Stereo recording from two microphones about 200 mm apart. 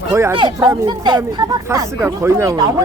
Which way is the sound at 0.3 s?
25° right (ahead or behind).